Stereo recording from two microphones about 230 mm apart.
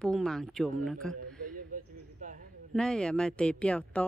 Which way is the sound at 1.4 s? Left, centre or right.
Right.